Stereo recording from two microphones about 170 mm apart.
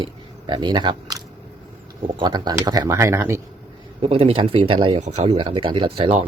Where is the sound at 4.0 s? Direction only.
35° right (ahead or behind).